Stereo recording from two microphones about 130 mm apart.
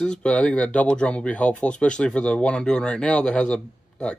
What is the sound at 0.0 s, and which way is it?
Speech, 5° left (ahead or behind).